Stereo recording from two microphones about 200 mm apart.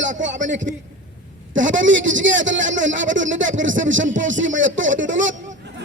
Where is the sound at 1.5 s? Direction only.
70° right (ahead or behind).